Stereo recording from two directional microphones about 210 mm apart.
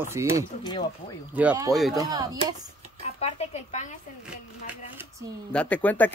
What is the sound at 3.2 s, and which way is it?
Speech, 35° left (ahead or behind).